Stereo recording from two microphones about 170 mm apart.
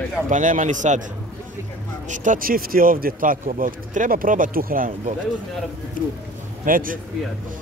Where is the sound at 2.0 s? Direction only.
45° right (ahead or behind).